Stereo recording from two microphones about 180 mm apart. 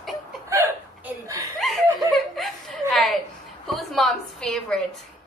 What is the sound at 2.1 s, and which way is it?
Chuckle, centre (ahead or behind).